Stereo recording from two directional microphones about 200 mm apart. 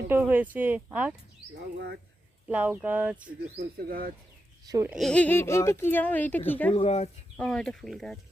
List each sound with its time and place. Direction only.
0.1 s speech: 10° right (ahead or behind)
1.5 s speech: 55° right (ahead or behind)
2.5 s speech: 10° right (ahead or behind)
3.6 s speech: 50° right (ahead or behind)
4.6 s speech: 20° right (ahead or behind)
4.9 s speech: centre (ahead or behind)
6.7 s speech: 30° left (ahead or behind)
7.3 s speech: 5° left (ahead or behind)